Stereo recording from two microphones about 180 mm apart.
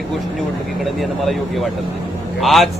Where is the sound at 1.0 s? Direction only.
Centre (ahead or behind).